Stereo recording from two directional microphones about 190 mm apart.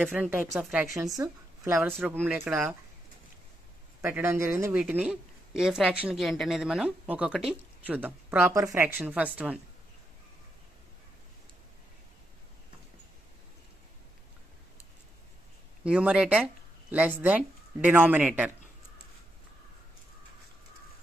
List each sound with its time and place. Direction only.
0.0 s speech: 10° right (ahead or behind)
1.1 s speech: 20° right (ahead or behind)
2.0 s speech: 5° right (ahead or behind)
4.0 s speech: 10° right (ahead or behind)
15.8 s speech: 5° right (ahead or behind)